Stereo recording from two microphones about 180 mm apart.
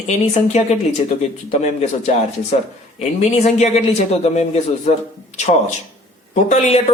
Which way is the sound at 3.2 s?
40° left (ahead or behind).